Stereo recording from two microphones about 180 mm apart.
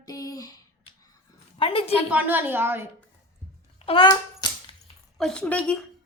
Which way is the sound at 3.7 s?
30° left (ahead or behind).